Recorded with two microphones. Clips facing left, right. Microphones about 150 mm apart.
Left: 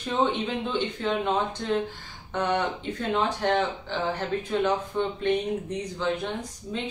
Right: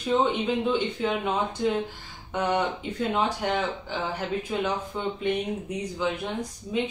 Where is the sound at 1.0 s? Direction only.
10° right (ahead or behind).